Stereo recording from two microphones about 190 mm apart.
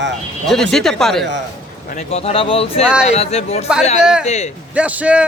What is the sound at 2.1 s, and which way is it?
Speech, 30° left (ahead or behind).